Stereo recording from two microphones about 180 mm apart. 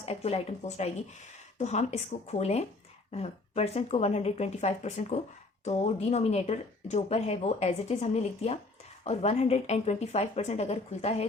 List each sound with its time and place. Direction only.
0.0 s speech: 35° left (ahead or behind)